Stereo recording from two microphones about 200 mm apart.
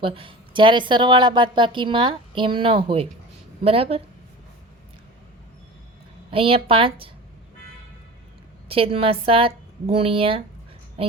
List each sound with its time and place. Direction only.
0.0 s a woman's voice: 25° right (ahead or behind)
6.3 s a woman's voice: 25° right (ahead or behind)
8.7 s a woman's voice: 30° right (ahead or behind)